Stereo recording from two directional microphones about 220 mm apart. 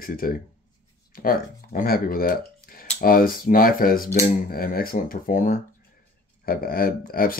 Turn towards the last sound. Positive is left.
turn(degrees=40)  # may be behind; listen again after turning